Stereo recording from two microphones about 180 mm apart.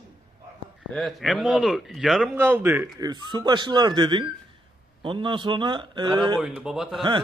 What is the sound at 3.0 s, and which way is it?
Speech, 25° right (ahead or behind).